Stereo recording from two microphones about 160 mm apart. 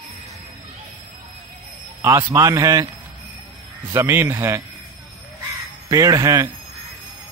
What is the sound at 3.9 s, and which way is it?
Speech, 15° right (ahead or behind).